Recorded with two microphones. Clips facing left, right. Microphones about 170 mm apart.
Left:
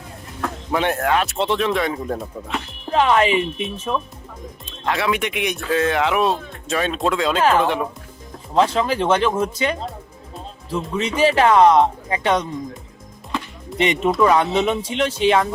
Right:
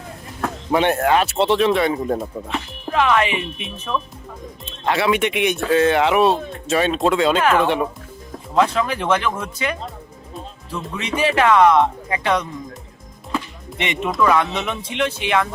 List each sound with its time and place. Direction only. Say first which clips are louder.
0.7 s speech: right 3 dB; centre (ahead or behind)
2.9 s speech: left 2 dB; 30° left (ahead or behind)
4.6 s speech: right 2 dB; centre (ahead or behind)
8.5 s speech: left 1 dB; 30° left (ahead or behind)
13.7 s speech: left 4 dB; 30° left (ahead or behind)